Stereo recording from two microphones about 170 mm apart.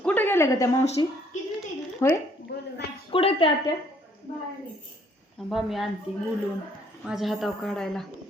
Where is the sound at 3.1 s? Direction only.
30° left (ahead or behind).